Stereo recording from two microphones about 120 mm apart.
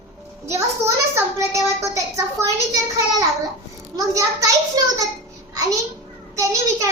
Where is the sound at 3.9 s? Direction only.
30° right (ahead or behind).